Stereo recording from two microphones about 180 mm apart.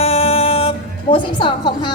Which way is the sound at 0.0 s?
35° left (ahead or behind).